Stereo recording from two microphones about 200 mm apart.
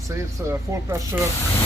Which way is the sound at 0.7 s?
15° right (ahead or behind).